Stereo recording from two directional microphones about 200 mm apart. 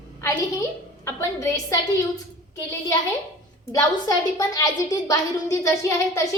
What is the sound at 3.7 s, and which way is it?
A woman's voice, 15° left (ahead or behind).